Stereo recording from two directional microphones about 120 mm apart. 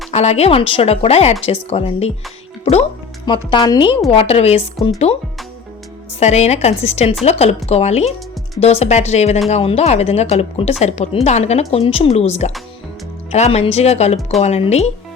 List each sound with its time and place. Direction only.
0.1 s speech: 65° left (ahead or behind)
3.2 s speech: 40° left (ahead or behind)
4.1 s speech: 55° left (ahead or behind)
6.1 s speech: 70° left (ahead or behind)
11.7 s speech: 55° left (ahead or behind)